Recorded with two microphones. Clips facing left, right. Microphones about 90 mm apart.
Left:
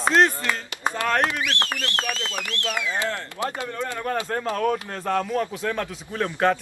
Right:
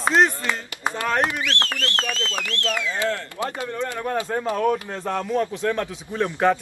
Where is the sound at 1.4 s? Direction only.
15° left (ahead or behind).